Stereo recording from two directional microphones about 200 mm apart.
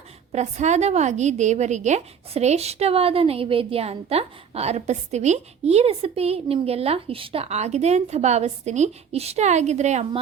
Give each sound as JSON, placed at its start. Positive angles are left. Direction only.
{"t": 0.3, "sound": "a woman's voice", "side_deg": -35}